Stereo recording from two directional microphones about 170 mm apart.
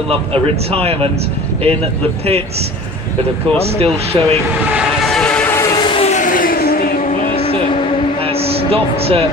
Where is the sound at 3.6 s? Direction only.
35° right (ahead or behind).